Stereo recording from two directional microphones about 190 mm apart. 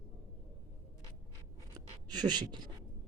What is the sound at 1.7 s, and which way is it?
Writing, 20° right (ahead or behind).